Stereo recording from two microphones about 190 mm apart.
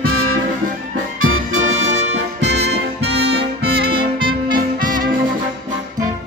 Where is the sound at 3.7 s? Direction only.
25° right (ahead or behind).